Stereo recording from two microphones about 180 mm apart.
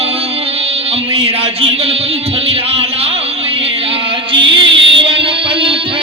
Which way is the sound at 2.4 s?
35° right (ahead or behind).